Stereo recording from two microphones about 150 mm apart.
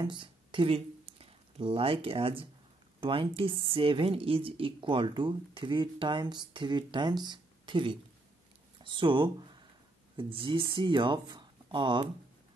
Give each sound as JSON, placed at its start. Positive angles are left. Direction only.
{"t": 0.0, "sound": "speech", "side_deg": -35}